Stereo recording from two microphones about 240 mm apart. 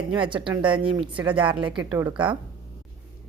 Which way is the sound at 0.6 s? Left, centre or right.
Centre.